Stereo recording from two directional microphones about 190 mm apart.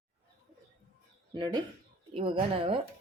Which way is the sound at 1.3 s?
20° right (ahead or behind).